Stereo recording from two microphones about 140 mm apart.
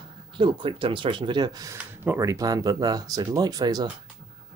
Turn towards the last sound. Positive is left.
turn(degrees=-25)  # may be behind; listen again after turning